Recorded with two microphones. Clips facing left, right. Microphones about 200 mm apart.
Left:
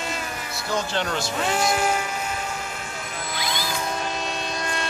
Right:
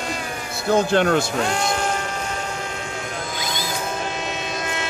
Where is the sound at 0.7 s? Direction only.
55° right (ahead or behind).